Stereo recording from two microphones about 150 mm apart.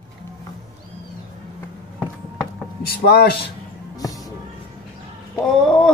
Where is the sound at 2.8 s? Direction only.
90° left.